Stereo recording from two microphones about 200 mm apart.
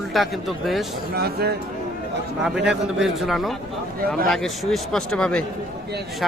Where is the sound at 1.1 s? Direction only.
50° right (ahead or behind).